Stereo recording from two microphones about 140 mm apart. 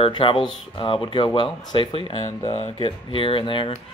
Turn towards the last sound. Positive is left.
turn(degrees=35)  # may be behind; listen again after turning